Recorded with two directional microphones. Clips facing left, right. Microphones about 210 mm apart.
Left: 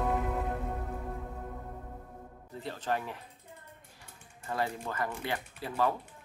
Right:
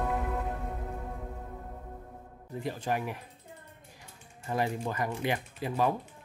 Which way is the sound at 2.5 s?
10° right (ahead or behind).